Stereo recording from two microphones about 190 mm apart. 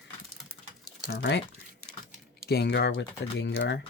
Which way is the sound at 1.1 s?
65° left (ahead or behind).